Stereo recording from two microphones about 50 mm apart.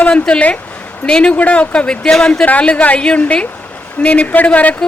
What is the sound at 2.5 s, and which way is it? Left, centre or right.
A woman's voice, left.